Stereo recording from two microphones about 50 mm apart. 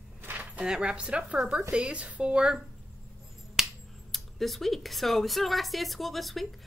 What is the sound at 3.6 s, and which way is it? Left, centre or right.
Finger snapping, centre.